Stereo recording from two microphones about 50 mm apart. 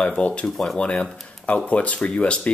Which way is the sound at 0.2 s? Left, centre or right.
Left.